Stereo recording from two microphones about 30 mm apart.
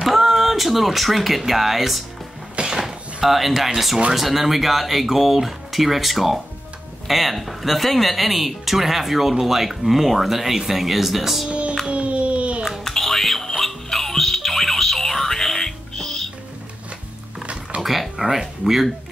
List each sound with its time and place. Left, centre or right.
0.0 s speech: centre
2.5 s a sound: right
3.3 s speech: centre
11.9 s a sound: right
12.8 s music: centre
17.8 s speech: centre